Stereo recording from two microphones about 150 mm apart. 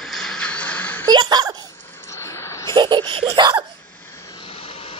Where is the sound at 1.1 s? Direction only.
30° right (ahead or behind).